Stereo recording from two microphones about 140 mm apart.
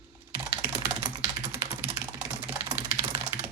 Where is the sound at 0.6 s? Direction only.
20° right (ahead or behind).